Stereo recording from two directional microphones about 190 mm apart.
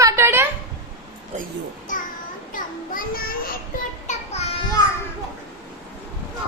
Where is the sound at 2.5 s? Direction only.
45° left (ahead or behind).